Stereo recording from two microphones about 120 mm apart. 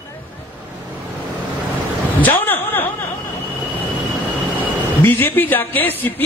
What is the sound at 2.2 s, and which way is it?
Speech, 15° left (ahead or behind).